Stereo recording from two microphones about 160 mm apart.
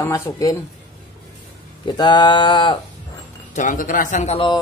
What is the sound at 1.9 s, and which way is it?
Speech, 30° left (ahead or behind).